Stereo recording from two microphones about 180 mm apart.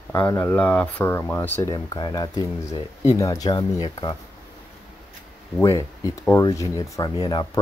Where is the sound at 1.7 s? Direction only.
25° left (ahead or behind).